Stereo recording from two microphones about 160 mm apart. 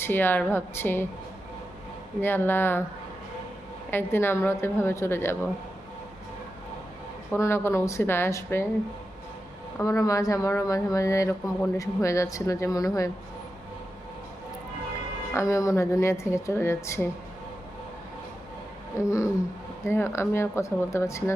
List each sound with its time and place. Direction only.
0.0 s a woman's voice: 10° left (ahead or behind)
2.2 s a woman's voice: 15° left (ahead or behind)
3.9 s a woman's voice: 15° left (ahead or behind)
7.3 s a woman's voice: 15° left (ahead or behind)
9.7 s speech: 20° left (ahead or behind)
15.3 s a woman's voice: 20° left (ahead or behind)
18.9 s a woman's voice: 20° left (ahead or behind)